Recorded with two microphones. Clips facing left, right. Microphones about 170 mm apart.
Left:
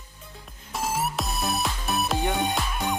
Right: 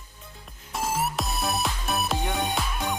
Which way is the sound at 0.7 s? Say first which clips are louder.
Even; centre (ahead or behind).